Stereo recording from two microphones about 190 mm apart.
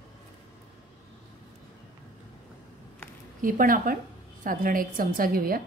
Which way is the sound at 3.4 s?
45° right (ahead or behind).